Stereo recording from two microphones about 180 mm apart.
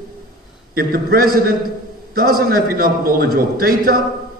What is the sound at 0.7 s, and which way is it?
A man's voice, 55° right (ahead or behind).